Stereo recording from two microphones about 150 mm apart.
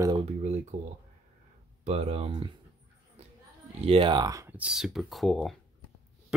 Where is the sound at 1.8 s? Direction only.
45° right (ahead or behind).